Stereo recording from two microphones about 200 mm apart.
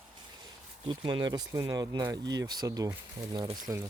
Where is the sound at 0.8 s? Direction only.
25° right (ahead or behind).